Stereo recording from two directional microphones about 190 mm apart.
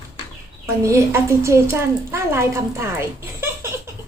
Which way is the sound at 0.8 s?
15° right (ahead or behind).